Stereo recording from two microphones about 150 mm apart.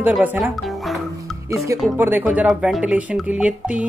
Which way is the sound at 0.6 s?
Centre (ahead or behind).